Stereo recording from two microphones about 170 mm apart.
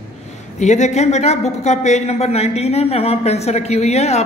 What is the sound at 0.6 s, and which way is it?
Speech, 45° left (ahead or behind).